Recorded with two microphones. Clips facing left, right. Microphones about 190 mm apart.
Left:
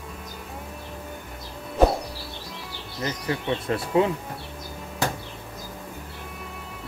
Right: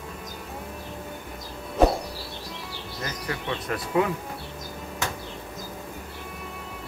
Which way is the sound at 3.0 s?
25° left (ahead or behind).